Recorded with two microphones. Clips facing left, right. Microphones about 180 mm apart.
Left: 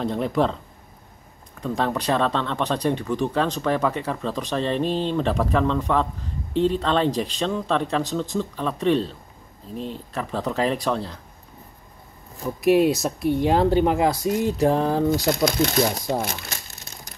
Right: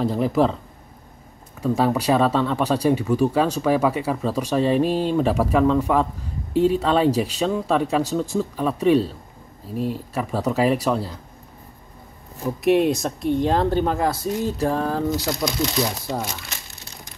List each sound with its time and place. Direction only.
0.0 s speech: 5° right (ahead or behind)
1.8 s speech: 10° right (ahead or behind)
12.4 s speech: centre (ahead or behind); by 15.0 s 20° left (ahead or behind)
15.0 s speech: 55° left (ahead or behind)